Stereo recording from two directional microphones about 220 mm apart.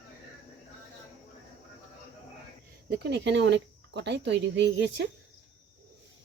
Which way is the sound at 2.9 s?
50° right (ahead or behind).